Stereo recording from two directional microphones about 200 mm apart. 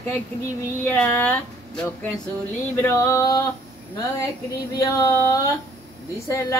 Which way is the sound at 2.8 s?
15° left (ahead or behind).